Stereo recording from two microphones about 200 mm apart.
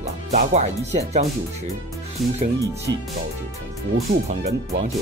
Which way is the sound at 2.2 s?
Centre (ahead or behind).